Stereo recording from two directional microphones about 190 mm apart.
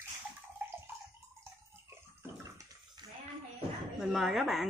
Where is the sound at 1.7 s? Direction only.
15° right (ahead or behind).